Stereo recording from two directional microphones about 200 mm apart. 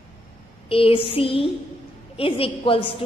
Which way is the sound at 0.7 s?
25° left (ahead or behind).